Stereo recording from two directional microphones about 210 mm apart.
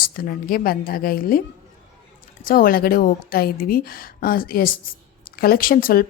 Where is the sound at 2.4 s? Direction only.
40° left (ahead or behind).